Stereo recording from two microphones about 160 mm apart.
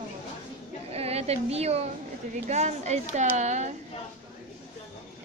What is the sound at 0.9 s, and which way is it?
A woman's voice, 40° right (ahead or behind).